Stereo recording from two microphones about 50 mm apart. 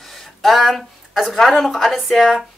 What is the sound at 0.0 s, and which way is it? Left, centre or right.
Speech, centre.